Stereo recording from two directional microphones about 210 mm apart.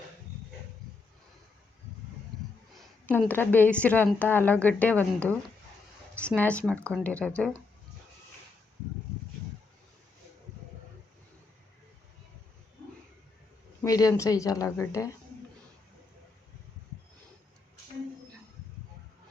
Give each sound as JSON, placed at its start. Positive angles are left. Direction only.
{"t": 2.3, "sound": "a sound", "side_deg": 0}
{"t": 2.7, "sound": "a woman's voice", "side_deg": 10}
{"t": 13.8, "sound": "a woman's voice", "side_deg": 15}